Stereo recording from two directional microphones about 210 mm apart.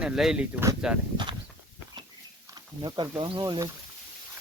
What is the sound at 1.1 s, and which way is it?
Speech, 20° right (ahead or behind).